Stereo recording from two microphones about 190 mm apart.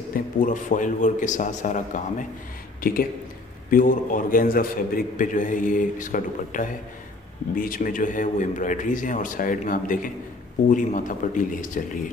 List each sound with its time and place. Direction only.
0.1 s a man's voice: 45° left (ahead or behind)